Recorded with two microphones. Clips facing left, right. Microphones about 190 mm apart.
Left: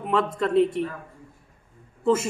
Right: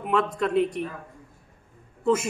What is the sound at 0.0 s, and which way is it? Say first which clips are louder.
Speech: left 1 dB; centre (ahead or behind).